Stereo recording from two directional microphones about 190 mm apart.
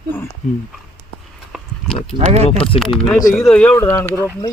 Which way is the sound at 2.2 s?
35° right (ahead or behind).